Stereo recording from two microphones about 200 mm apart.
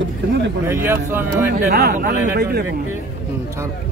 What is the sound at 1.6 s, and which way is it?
Speech, 55° right (ahead or behind).